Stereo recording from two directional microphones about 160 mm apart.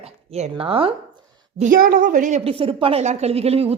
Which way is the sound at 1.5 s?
55° right (ahead or behind).